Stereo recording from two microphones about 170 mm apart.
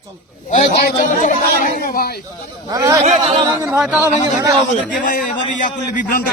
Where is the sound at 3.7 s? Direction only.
5° right (ahead or behind).